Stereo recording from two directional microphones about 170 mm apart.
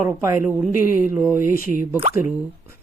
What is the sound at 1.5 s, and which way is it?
Speech, 55° left (ahead or behind).